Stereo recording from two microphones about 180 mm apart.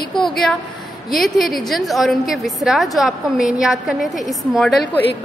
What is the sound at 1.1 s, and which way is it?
A woman's voice, centre (ahead or behind).